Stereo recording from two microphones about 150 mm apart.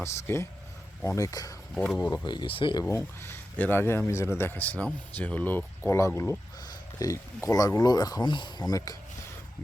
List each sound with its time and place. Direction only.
0.0 s speech: 15° left (ahead or behind)
1.7 s speech: centre (ahead or behind)
2.0 s speech: 20° left (ahead or behind)
2.8 s speech: 15° left (ahead or behind)